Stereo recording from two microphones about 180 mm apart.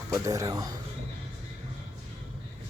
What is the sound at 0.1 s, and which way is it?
Speech, 20° right (ahead or behind).